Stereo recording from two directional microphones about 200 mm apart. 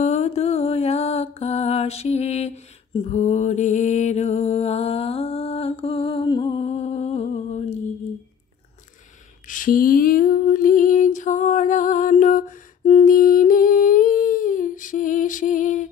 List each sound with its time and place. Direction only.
0.0 s mantra: 35° left (ahead or behind)
9.5 s lullaby: 40° left (ahead or behind)